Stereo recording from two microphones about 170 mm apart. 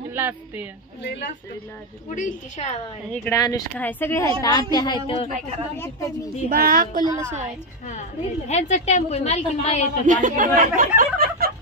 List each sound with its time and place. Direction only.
0.1 s speech: 10° right (ahead or behind)
1.0 s a woman's voice: 90° left
2.0 s a woman's voice: 45° left (ahead or behind)
3.1 s a woman's voice: 20° left (ahead or behind); by 5.3 s 35° left (ahead or behind)
5.8 s a woman's voice: 20° left (ahead or behind)
6.5 s speech: 60° right (ahead or behind)
8.5 s a woman's voice: 40° left (ahead or behind)
10.0 s speech: 50° right (ahead or behind)